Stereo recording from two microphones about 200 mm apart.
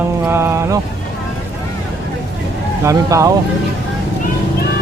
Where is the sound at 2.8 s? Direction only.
15° right (ahead or behind).